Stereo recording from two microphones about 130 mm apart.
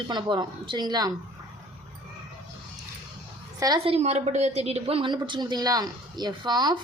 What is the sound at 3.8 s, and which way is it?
A woman's voice, 55° right (ahead or behind).